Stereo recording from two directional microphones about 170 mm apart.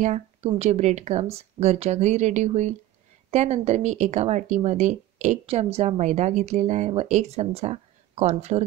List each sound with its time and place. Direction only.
0.0 s speech: 40° right (ahead or behind)